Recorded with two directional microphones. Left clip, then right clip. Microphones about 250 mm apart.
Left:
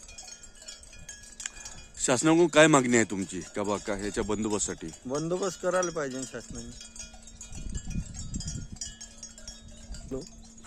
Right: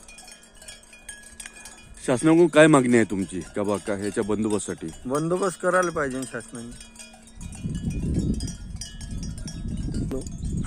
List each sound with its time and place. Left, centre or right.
0.3 s cowbell: right
2.0 s speech: centre
5.5 s wind chime: centre
7.0 s a sound: right